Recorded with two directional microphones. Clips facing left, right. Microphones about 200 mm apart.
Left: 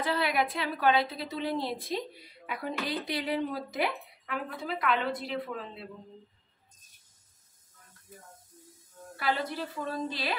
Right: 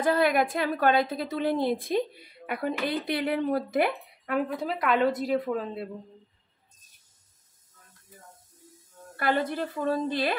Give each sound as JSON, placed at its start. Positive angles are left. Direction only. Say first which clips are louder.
{"t": 0.0, "sound": "a woman's voice", "louder": "right 6 dB", "side_deg": -50}
{"t": 9.1, "sound": "a woman's voice", "louder": "right 5 dB", "side_deg": -50}